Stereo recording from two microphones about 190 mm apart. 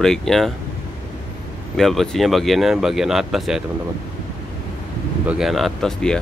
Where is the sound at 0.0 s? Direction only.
5° left (ahead or behind).